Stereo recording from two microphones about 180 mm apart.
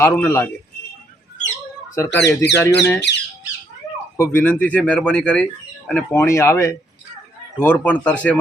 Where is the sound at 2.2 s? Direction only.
70° left (ahead or behind).